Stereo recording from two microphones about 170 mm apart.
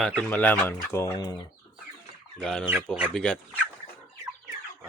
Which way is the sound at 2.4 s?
5° left (ahead or behind).